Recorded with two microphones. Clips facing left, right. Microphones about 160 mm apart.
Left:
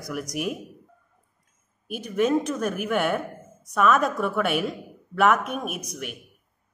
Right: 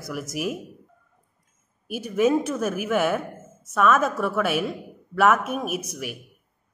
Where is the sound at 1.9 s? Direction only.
10° right (ahead or behind).